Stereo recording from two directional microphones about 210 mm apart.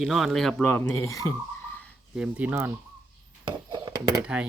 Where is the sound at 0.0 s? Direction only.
Centre (ahead or behind); by 1.3 s 15° left (ahead or behind).